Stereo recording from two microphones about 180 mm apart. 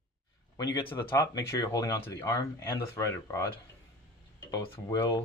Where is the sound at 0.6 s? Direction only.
20° left (ahead or behind).